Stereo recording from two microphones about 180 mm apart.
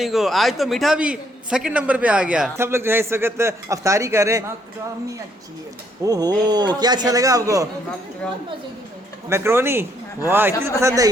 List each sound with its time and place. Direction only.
0.0 s a man's voice: centre (ahead or behind); by 4.4 s 15° right (ahead or behind)
6.1 s speech: 20° right (ahead or behind)
9.3 s a man's voice: 15° right (ahead or behind)